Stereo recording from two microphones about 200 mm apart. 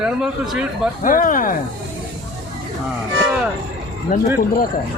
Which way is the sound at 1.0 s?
45° left (ahead or behind).